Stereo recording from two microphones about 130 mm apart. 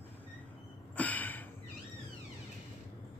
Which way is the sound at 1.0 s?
10° left (ahead or behind).